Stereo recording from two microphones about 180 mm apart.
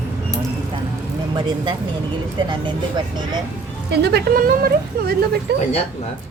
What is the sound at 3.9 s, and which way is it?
Speech, 65° right (ahead or behind).